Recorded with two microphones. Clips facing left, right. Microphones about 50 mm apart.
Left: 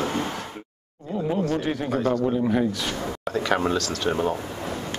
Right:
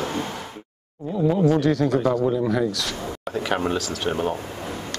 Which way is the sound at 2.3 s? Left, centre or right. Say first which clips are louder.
Right 1 dB; left.